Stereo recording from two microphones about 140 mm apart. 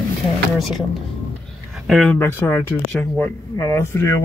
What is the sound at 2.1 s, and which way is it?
Speech, 15° left (ahead or behind).